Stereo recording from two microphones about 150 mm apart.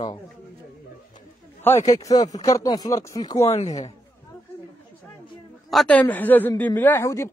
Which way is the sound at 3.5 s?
50° left (ahead or behind).